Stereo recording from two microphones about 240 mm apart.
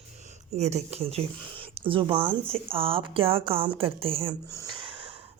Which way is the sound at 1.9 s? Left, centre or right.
Right.